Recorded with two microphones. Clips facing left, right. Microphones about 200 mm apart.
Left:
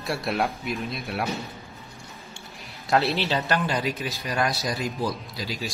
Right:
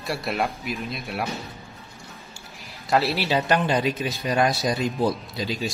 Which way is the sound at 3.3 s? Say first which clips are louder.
Right 4 dB; 15° right (ahead or behind).